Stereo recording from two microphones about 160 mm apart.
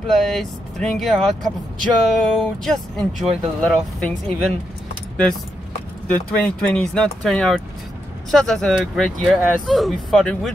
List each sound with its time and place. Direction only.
0.0 s speech: 5° left (ahead or behind)
6.0 s speech: 5° left (ahead or behind)